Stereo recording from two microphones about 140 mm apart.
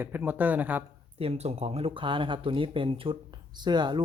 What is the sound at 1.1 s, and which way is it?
Speech, 45° right (ahead or behind).